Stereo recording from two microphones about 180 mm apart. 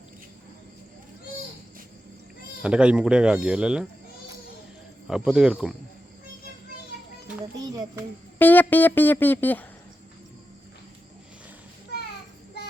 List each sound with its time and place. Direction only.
2.6 s speech: 5° right (ahead or behind)
5.0 s speech: 5° right (ahead or behind)
7.5 s a sound: 20° right (ahead or behind)
8.4 s speech: 10° left (ahead or behind)